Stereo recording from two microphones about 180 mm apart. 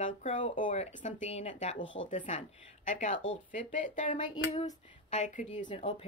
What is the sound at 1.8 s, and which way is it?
Speech, 90° left.